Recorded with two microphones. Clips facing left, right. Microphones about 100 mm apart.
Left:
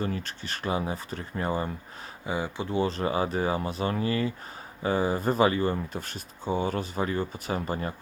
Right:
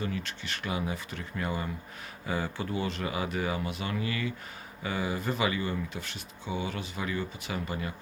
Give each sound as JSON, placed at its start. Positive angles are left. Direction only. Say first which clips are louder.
{"t": 0.0, "sound": "speech", "louder": "left 3 dB", "side_deg": 40}
{"t": 2.2, "sound": "speech", "louder": "left 2 dB", "side_deg": 20}
{"t": 2.7, "sound": "speech", "louder": "left 8 dB", "side_deg": 35}